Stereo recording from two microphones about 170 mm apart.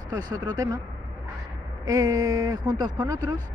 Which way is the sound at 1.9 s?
20° right (ahead or behind).